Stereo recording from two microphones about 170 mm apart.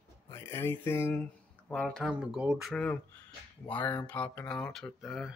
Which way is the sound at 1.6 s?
5° left (ahead or behind).